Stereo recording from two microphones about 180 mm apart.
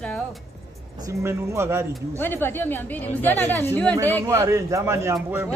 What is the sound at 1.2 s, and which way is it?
Speech, 15° right (ahead or behind).